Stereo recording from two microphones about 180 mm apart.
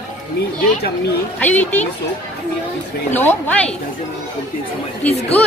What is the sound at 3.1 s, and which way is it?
Speech, 10° left (ahead or behind).